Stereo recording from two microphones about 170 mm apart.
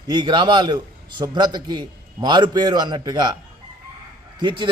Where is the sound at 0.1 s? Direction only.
25° right (ahead or behind).